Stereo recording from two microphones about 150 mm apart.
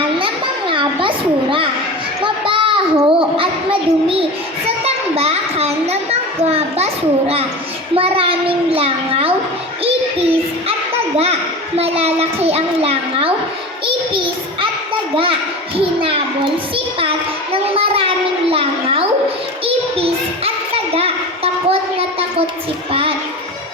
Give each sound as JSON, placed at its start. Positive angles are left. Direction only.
{"t": 0.7, "sound": "a sound", "side_deg": -35}
{"t": 2.2, "sound": "children playing", "side_deg": -35}
{"t": 3.1, "sound": "child singing", "side_deg": -35}
{"t": 7.9, "sound": "a child's voice", "side_deg": -40}
{"t": 9.8, "sound": "music", "side_deg": -40}
{"t": 11.8, "sound": "a child's voice", "side_deg": -40}
{"t": 15.1, "sound": "a child's voice", "side_deg": -35}
{"t": 15.8, "sound": "child singing", "side_deg": -35}
{"t": 17.5, "sound": "a sound", "side_deg": -40}
{"t": 19.6, "sound": "child singing", "side_deg": -40}
{"t": 20.9, "sound": "a sound", "side_deg": -40}
{"t": 22.9, "sound": "child singing", "side_deg": -40}